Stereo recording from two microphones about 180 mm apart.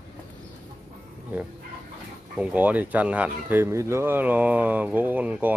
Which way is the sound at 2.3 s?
5° right (ahead or behind).